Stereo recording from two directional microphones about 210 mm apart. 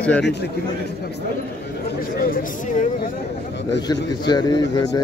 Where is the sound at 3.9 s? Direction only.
20° left (ahead or behind).